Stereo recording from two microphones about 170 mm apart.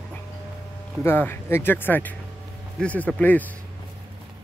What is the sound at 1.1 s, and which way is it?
Speech, 10° left (ahead or behind).